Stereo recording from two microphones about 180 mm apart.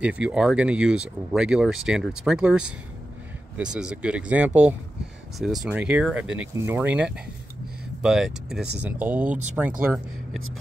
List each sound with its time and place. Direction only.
0.0 s speech: 5° right (ahead or behind)
9.3 s speech: 40° right (ahead or behind)